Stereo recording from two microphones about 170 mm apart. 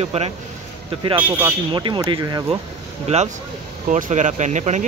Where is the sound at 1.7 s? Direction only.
25° right (ahead or behind).